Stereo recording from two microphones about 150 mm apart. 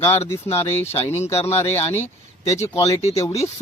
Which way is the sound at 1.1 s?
15° left (ahead or behind).